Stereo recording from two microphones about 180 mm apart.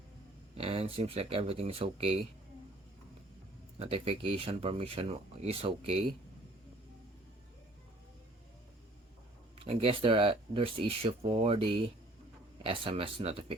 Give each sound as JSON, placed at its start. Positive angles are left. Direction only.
{"t": 0.5, "sound": "speech", "side_deg": -35}
{"t": 3.8, "sound": "speech", "side_deg": -30}
{"t": 9.6, "sound": "speech", "side_deg": -30}